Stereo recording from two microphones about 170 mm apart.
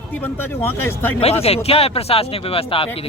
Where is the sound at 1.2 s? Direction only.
35° left (ahead or behind).